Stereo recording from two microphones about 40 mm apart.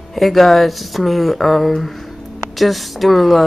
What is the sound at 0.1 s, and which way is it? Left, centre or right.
A woman's voice, centre.